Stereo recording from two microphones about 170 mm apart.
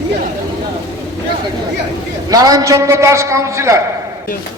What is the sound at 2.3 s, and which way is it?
A man's voice, 20° right (ahead or behind).